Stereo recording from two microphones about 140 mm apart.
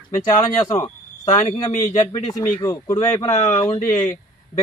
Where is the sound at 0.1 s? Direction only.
25° left (ahead or behind).